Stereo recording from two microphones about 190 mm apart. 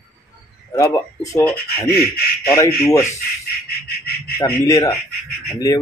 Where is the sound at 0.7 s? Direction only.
15° left (ahead or behind).